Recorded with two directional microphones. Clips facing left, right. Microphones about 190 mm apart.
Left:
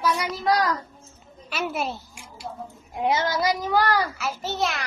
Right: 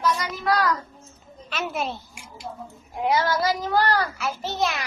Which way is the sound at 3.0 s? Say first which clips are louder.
Right 1 dB; 20° left (ahead or behind).